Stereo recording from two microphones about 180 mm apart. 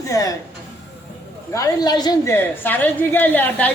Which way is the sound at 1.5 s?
20° left (ahead or behind).